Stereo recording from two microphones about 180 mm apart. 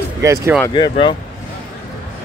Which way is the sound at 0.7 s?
25° left (ahead or behind).